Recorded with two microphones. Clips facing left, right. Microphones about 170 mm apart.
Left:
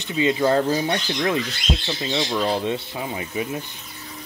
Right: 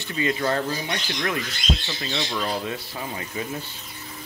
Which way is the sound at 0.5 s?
30° left (ahead or behind).